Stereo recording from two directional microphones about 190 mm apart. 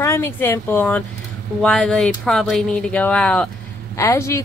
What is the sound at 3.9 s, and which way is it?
Speech, 15° left (ahead or behind).